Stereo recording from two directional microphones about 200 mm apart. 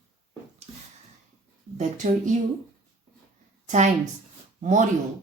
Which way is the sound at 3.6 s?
35° right (ahead or behind).